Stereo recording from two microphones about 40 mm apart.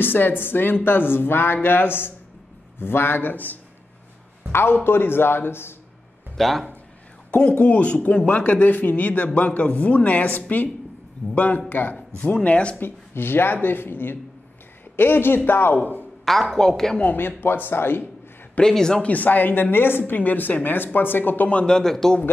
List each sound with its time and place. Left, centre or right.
0.0 s speech: left
4.5 s a man's voice: left
6.3 s speech: centre
7.5 s a man's voice: left
12.4 s a man's voice: left
12.8 s speech: left
16.3 s a woman's voice: centre
17.4 s speech: left
18.7 s a woman's voice: centre
19.0 s a woman's voice: left
21.6 s a man's voice: centre